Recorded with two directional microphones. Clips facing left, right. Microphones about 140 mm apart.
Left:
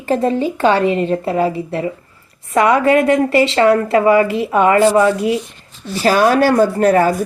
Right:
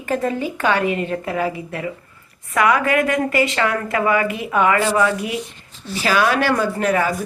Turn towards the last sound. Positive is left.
turn(degrees=40)  # may be behind; listen again after turning